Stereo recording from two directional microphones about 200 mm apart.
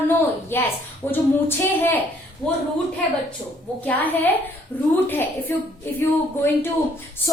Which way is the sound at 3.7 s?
5° left (ahead or behind).